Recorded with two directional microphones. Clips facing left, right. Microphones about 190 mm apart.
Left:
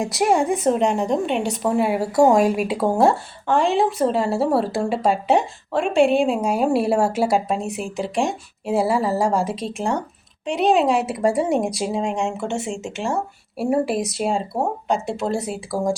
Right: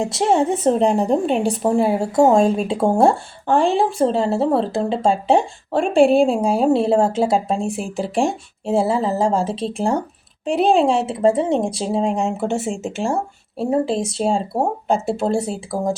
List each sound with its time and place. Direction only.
0.0 s a woman's voice: 25° right (ahead or behind)
3.4 s speech: centre (ahead or behind)
3.9 s speech: 30° right (ahead or behind)
5.7 s speech: centre (ahead or behind)
6.1 s speech: 35° right (ahead or behind)
7.8 s speech: centre (ahead or behind)
8.6 s speech: 25° right (ahead or behind)
12.4 s speech: centre (ahead or behind)
13.6 s speech: 25° right (ahead or behind)
14.9 s speech: centre (ahead or behind)
15.4 s speech: 30° right (ahead or behind)